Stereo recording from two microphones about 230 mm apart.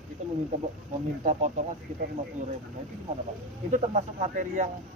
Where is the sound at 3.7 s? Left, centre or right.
Right.